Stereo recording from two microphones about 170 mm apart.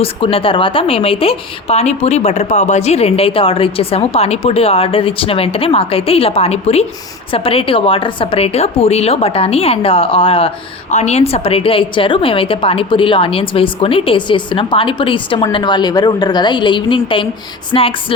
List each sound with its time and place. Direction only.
0.0 s a woman's voice: 35° left (ahead or behind)